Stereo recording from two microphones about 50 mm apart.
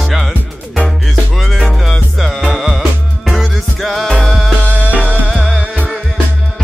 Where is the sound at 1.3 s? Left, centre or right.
Centre.